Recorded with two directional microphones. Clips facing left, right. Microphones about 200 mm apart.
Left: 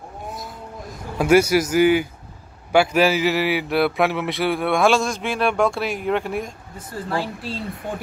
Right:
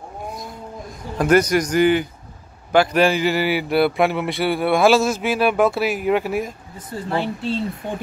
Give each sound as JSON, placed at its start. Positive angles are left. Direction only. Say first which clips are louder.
{"t": 1.1, "sound": "speech", "louder": "even", "side_deg": 10}
{"t": 6.9, "sound": "speech", "louder": "right 2 dB", "side_deg": -20}